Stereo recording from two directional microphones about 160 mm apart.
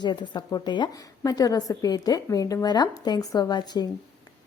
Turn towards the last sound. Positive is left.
turn(degrees=25)  # may be behind; listen again after turning